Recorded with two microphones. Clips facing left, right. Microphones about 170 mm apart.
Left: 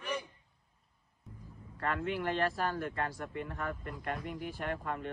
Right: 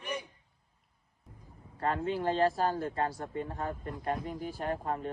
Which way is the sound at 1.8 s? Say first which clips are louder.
Right 3 dB; 30° right (ahead or behind).